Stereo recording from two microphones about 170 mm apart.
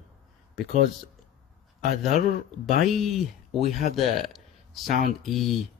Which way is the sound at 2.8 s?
Centre (ahead or behind).